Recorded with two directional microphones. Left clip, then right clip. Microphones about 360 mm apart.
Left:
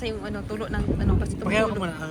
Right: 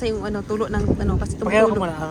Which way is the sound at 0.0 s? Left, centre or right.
Centre.